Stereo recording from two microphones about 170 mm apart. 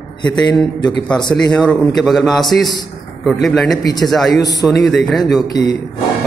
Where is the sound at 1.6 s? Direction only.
10° left (ahead or behind).